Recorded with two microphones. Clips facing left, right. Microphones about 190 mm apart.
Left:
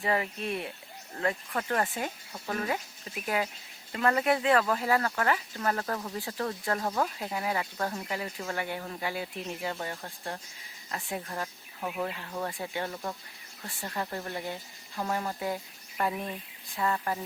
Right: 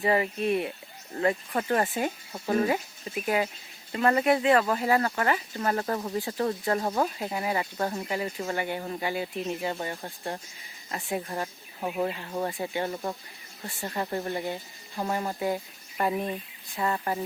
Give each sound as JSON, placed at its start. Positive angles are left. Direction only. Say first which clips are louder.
{"t": 0.0, "sound": "speech", "louder": "right 5 dB", "side_deg": -5}
{"t": 3.2, "sound": "speech", "louder": "right 3 dB", "side_deg": -5}
{"t": 6.1, "sound": "speech", "louder": "right 6 dB", "side_deg": 0}
{"t": 6.4, "sound": "speech", "louder": "right 4 dB", "side_deg": -15}
{"t": 7.2, "sound": "speech", "louder": "right 3 dB", "side_deg": -5}
{"t": 12.5, "sound": "speech", "louder": "right 4 dB", "side_deg": -5}
{"t": 12.8, "sound": "speech", "louder": "right 4 dB", "side_deg": -20}
{"t": 14.9, "sound": "speech", "louder": "right 2 dB", "side_deg": -15}